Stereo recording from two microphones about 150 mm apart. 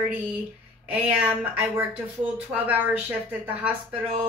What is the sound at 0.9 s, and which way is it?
Speech, 10° right (ahead or behind).